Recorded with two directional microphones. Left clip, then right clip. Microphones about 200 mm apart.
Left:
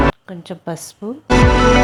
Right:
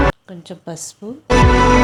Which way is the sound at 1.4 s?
Centre (ahead or behind).